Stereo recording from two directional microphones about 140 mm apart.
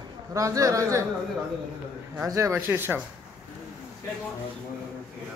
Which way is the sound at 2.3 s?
25° right (ahead or behind).